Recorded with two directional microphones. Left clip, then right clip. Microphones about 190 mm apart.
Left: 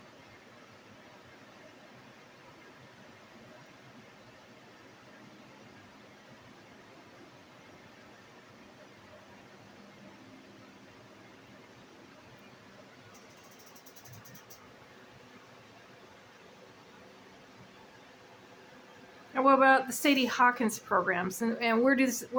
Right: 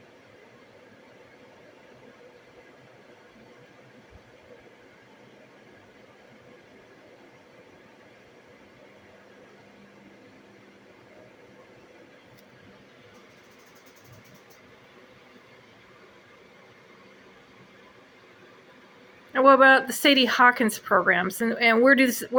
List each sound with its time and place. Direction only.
19.3 s speech: 15° right (ahead or behind)